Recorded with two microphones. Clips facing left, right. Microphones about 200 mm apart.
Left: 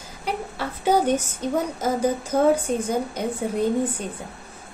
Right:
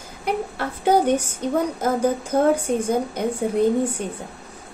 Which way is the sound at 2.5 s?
10° right (ahead or behind).